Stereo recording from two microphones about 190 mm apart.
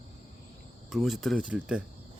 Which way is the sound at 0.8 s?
Centre (ahead or behind).